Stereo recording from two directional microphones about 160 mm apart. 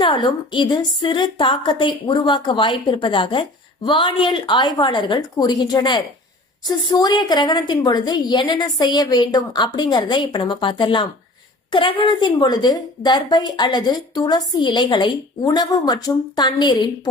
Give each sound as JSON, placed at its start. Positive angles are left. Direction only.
{"t": 0.0, "sound": "a woman's voice", "side_deg": 30}